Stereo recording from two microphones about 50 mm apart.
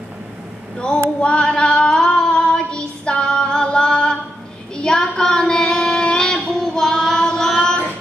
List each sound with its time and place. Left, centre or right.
0.7 s a sound: centre
1.2 s female singing: left
4.8 s child singing: centre
6.3 s music: centre